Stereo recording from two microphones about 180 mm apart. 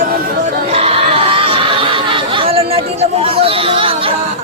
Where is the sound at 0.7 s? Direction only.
35° right (ahead or behind).